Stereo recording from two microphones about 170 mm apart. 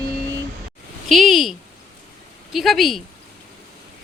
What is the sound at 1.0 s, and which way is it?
Speech, centre (ahead or behind).